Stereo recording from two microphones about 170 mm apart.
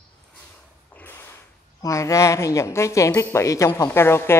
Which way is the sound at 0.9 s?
10° left (ahead or behind).